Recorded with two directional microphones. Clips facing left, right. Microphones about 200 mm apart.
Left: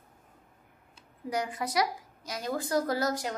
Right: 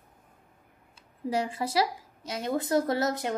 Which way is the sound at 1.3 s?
25° right (ahead or behind).